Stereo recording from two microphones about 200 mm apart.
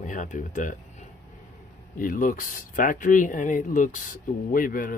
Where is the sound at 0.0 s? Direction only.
40° left (ahead or behind).